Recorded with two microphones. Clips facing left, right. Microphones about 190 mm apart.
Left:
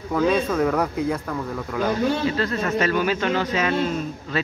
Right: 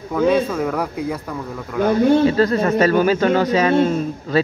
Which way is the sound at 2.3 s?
40° right (ahead or behind).